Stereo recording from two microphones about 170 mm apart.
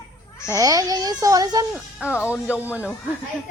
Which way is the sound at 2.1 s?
10° left (ahead or behind).